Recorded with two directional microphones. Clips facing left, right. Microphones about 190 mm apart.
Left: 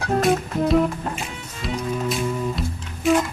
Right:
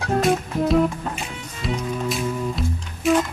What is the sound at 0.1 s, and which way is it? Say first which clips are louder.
Music: even; centre (ahead or behind).